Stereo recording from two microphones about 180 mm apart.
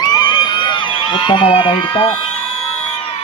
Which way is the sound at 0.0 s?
20° left (ahead or behind).